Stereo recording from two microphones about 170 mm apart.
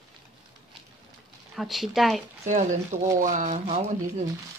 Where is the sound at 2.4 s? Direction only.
45° right (ahead or behind).